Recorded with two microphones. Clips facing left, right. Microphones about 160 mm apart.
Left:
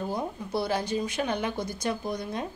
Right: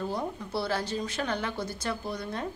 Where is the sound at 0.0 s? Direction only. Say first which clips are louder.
Left 1 dB; 15° left (ahead or behind).